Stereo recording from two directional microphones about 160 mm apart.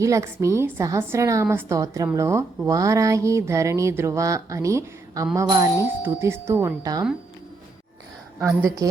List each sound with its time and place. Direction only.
0.0 s a woman's voice: 20° right (ahead or behind)
8.4 s a woman's voice: 20° right (ahead or behind)